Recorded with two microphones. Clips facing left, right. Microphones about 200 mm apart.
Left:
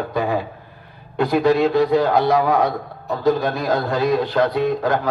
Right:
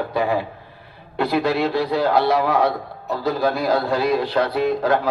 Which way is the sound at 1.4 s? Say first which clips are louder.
Left 5 dB; 15° left (ahead or behind).